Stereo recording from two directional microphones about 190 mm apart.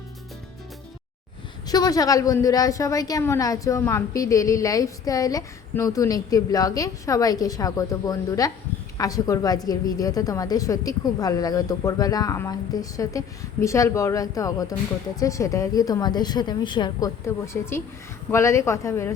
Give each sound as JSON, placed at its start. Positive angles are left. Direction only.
{"t": 1.6, "sound": "a woman's voice", "side_deg": 20}